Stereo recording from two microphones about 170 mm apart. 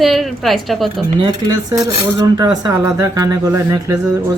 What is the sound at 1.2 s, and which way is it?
Dishes, 25° right (ahead or behind).